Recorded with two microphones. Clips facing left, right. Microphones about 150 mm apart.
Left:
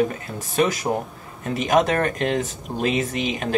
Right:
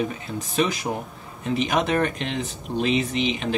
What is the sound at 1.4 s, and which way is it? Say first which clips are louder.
Speech: left 4 dB; 45° left (ahead or behind).